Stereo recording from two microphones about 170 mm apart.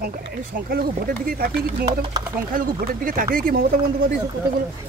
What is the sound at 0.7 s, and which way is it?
Speech, 60° right (ahead or behind).